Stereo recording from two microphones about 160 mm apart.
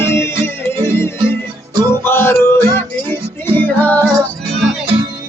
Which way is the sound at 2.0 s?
15° left (ahead or behind).